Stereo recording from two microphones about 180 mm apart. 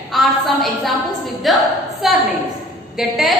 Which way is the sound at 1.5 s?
Centre (ahead or behind).